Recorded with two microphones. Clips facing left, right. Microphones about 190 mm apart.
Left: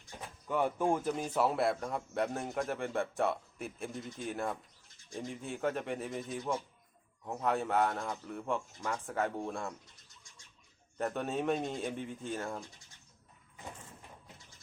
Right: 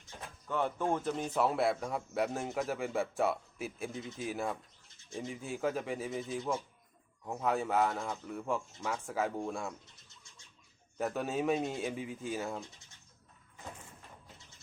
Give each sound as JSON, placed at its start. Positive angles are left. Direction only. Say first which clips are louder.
{"t": 0.4, "sound": "a man's voice", "louder": "left 2 dB", "side_deg": 10}
{"t": 10.9, "sound": "a man's voice", "louder": "right 1 dB", "side_deg": -5}